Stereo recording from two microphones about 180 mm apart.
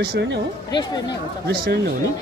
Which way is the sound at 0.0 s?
65° right (ahead or behind).